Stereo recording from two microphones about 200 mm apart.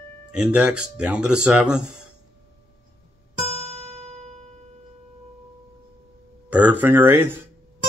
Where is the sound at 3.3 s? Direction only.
30° right (ahead or behind).